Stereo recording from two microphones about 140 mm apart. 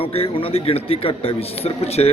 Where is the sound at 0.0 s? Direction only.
45° left (ahead or behind).